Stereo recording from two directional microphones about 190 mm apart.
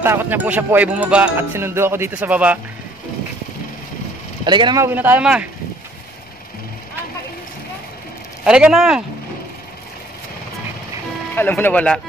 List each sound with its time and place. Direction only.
0.0 s speech: 10° right (ahead or behind)
4.5 s speech: 25° right (ahead or behind)
4.8 s speech: 10° right (ahead or behind)
8.5 s speech: 5° right (ahead or behind)
11.3 s speech: 10° left (ahead or behind)